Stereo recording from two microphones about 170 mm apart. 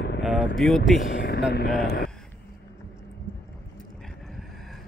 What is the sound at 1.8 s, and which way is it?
Speech, 60° left (ahead or behind).